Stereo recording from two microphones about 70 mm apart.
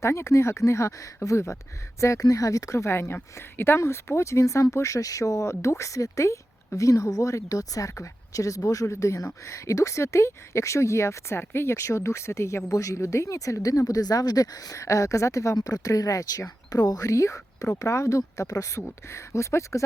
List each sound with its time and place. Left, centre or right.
0.0 s a woman's voice: left